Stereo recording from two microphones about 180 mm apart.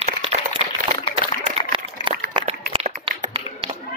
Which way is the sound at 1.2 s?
55° left (ahead or behind).